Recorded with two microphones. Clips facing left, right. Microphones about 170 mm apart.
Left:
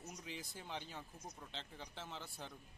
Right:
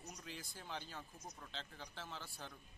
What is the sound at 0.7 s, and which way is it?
A man's voice, 15° left (ahead or behind).